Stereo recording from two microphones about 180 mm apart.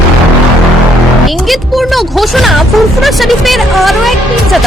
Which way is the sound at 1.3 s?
Centre (ahead or behind).